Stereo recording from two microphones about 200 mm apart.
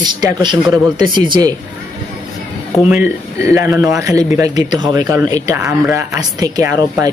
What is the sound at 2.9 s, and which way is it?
Speech, 10° right (ahead or behind).